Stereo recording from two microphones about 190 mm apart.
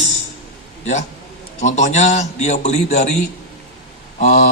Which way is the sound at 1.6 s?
40° left (ahead or behind).